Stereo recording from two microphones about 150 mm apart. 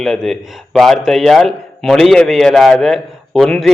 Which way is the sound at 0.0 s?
Centre (ahead or behind).